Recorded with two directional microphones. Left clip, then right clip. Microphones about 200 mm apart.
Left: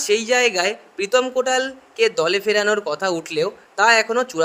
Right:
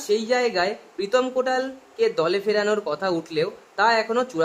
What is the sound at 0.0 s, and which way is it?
Speech, 25° left (ahead or behind).